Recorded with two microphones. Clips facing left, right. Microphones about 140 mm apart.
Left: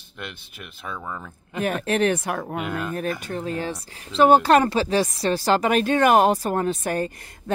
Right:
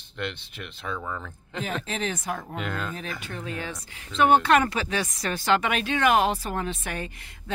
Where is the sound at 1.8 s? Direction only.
60° left (ahead or behind).